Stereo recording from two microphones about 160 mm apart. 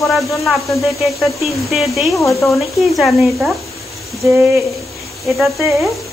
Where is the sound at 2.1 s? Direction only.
20° left (ahead or behind).